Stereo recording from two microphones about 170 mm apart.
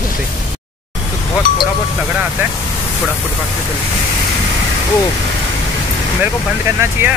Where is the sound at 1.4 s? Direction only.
70° right (ahead or behind).